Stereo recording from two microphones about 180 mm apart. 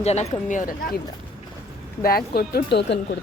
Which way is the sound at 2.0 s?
55° left (ahead or behind).